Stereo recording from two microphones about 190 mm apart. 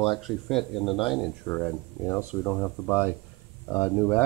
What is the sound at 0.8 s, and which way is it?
Speech, 25° left (ahead or behind).